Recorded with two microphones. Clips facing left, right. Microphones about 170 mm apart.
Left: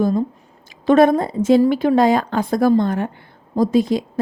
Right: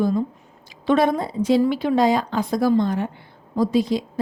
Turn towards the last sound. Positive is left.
turn(degrees=50)  # may be behind; listen again after turning